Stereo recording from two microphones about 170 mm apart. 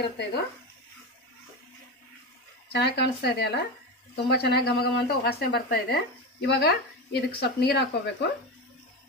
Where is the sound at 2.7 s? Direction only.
75° left (ahead or behind).